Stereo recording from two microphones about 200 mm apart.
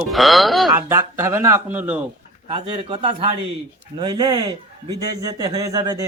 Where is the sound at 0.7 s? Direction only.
15° right (ahead or behind).